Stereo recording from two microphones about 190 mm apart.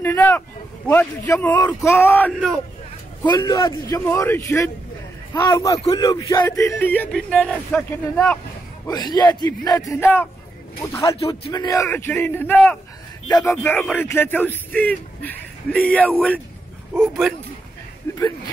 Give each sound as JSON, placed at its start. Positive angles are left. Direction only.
{"t": 0.0, "sound": "vehicle", "side_deg": 10}
{"t": 0.8, "sound": "speech", "side_deg": 10}
{"t": 8.9, "sound": "speech", "side_deg": 20}
{"t": 18.1, "sound": "a sound", "side_deg": 15}